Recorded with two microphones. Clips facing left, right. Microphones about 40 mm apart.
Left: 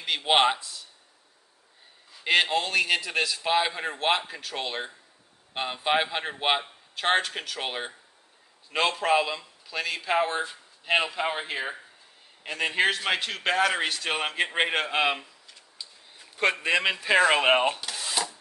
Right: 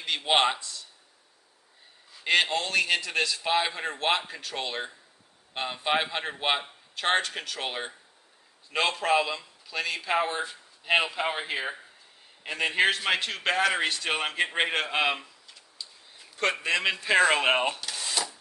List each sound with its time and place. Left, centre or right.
0.0 s a sound: centre
2.1 s a man's voice: centre
16.6 s speech: centre